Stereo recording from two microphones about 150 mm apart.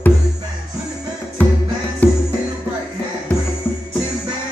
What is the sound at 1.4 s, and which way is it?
Music, 10° left (ahead or behind).